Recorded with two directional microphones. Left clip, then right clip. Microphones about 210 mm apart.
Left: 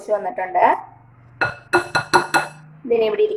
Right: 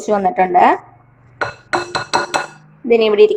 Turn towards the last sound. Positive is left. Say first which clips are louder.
# right 7 dB
turn(degrees=-40)  # may be behind; listen again after turning